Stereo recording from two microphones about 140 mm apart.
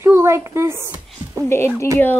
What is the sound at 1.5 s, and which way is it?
Speech, 20° left (ahead or behind).